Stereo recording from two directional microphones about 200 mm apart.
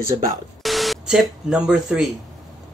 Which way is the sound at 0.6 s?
Centre (ahead or behind).